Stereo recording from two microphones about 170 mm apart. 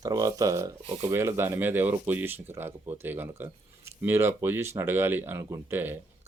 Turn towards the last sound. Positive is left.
turn(degrees=-10)  # may be behind; listen again after turning